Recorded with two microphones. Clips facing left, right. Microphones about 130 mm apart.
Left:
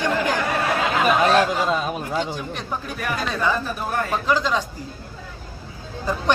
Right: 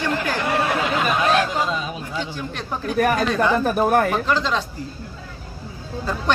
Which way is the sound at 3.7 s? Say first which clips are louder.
Right 8 dB; 75° right (ahead or behind).